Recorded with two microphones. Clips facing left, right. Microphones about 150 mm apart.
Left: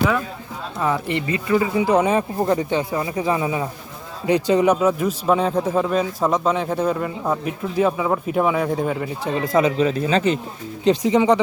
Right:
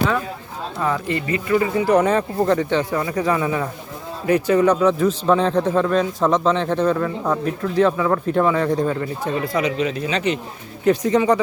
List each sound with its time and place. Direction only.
0.8 s a man's voice: 15° left (ahead or behind)
9.6 s speech: 35° left (ahead or behind)
10.8 s a man's voice: 15° left (ahead or behind)